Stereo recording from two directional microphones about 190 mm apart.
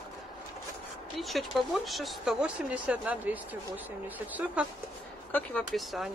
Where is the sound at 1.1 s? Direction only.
Centre (ahead or behind).